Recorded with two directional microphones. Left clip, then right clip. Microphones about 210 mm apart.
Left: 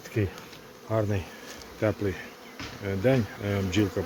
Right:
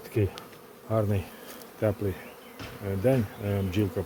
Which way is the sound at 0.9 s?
15° right (ahead or behind).